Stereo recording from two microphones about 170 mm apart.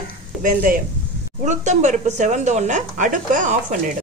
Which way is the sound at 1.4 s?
45° right (ahead or behind).